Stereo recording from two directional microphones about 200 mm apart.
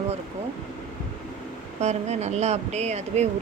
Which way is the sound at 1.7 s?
35° right (ahead or behind).